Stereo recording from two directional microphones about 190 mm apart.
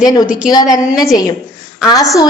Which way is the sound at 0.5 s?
20° left (ahead or behind).